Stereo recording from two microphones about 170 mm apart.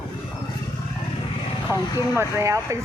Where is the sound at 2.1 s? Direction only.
15° right (ahead or behind).